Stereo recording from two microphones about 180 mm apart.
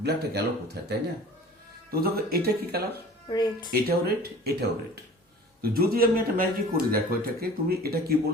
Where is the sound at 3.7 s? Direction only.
60° right (ahead or behind).